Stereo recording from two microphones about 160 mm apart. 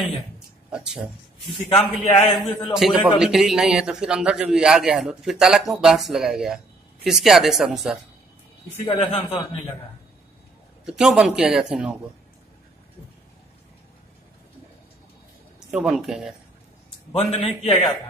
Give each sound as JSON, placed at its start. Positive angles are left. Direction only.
{"t": 0.7, "sound": "speech", "side_deg": -5}
{"t": 1.8, "sound": "a man's voice", "side_deg": 35}
{"t": 2.7, "sound": "a man's voice", "side_deg": -5}
{"t": 8.8, "sound": "a man's voice", "side_deg": 35}
{"t": 10.9, "sound": "a man's voice", "side_deg": -5}
{"t": 15.7, "sound": "a man's voice", "side_deg": 0}
{"t": 17.1, "sound": "a man's voice", "side_deg": 40}